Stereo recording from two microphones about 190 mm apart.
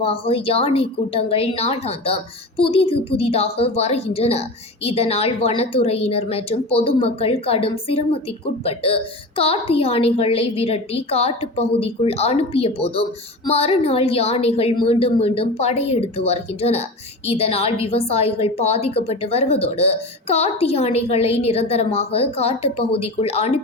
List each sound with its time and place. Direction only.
0.0 s a woman's voice: 30° left (ahead or behind)